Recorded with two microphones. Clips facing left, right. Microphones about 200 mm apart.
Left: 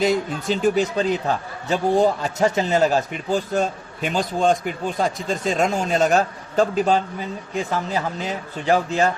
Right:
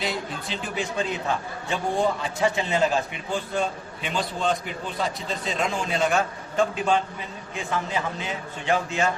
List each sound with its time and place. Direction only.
0.0 s a man's voice: 45° left (ahead or behind)